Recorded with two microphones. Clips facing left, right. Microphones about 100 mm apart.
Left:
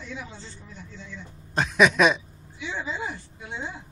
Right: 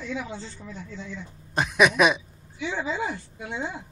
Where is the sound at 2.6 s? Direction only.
60° right (ahead or behind).